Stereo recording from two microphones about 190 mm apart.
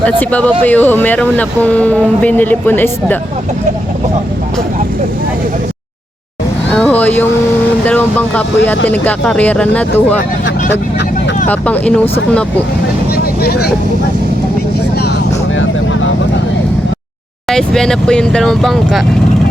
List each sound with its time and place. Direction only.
0.0 s speech: 10° left (ahead or behind)
6.7 s a sound: 5° left (ahead or behind)
7.9 s speech: 10° left (ahead or behind)
11.4 s speech: 10° left (ahead or behind)
13.1 s vehicle: 55° left (ahead or behind)
15.5 s vehicle: 90° left
17.5 s speech: 5° left (ahead or behind)